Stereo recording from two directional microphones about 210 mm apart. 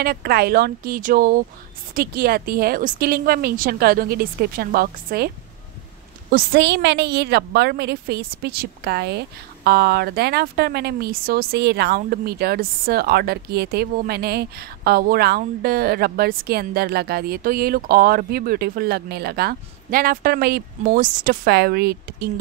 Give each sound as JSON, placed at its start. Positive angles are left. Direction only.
{"t": 0.0, "sound": "speech", "side_deg": -45}
{"t": 6.3, "sound": "speech", "side_deg": -50}